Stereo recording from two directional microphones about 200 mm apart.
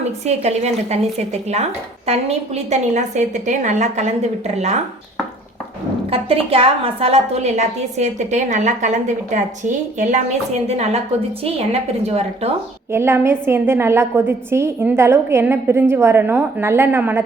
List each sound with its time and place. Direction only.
0.3 s a woman's voice: 35° right (ahead or behind)
6.1 s a woman's voice: 30° right (ahead or behind)
12.9 s a woman's voice: 10° right (ahead or behind)